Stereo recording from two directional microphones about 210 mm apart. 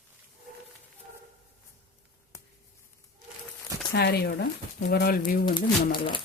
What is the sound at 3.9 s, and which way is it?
Speech, 50° left (ahead or behind).